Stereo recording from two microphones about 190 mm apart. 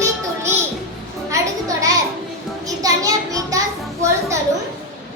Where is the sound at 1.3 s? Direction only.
15° right (ahead or behind).